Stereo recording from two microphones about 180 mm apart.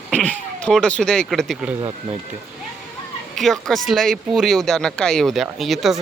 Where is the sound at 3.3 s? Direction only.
Centre (ahead or behind).